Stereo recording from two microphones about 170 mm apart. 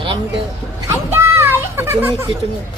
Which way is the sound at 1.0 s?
15° right (ahead or behind).